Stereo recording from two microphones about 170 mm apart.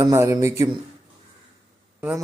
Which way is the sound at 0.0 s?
15° right (ahead or behind).